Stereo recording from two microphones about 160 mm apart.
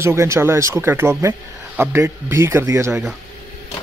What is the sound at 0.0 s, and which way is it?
Speech, 15° right (ahead or behind).